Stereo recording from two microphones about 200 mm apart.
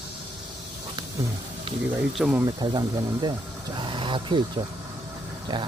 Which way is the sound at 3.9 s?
25° right (ahead or behind).